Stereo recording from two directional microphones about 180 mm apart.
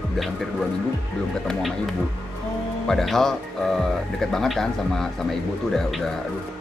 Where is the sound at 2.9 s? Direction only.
Centre (ahead or behind).